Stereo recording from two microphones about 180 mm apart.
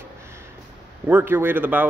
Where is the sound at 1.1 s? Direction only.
10° right (ahead or behind).